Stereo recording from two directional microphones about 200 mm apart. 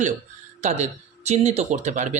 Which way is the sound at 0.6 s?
35° right (ahead or behind).